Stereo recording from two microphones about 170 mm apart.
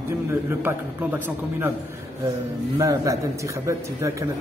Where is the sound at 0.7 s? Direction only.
10° right (ahead or behind).